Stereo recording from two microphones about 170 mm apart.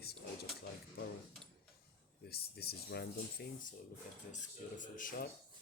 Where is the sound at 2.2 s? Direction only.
65° left (ahead or behind).